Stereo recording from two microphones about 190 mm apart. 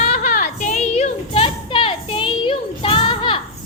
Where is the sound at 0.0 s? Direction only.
40° left (ahead or behind).